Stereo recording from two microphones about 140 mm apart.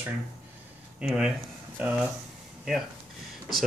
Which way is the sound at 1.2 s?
10° right (ahead or behind).